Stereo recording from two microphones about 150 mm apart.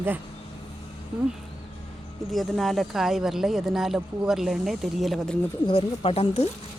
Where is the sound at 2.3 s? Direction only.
Centre (ahead or behind).